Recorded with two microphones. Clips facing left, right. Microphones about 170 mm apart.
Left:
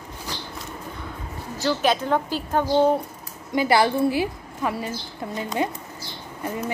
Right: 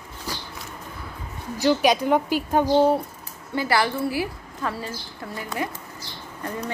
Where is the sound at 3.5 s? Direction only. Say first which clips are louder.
Left 4 dB; 20° left (ahead or behind).